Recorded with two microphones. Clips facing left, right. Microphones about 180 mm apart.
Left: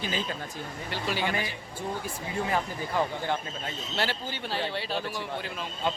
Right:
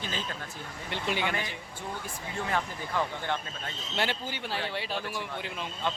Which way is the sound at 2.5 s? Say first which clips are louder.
Even; 10° left (ahead or behind).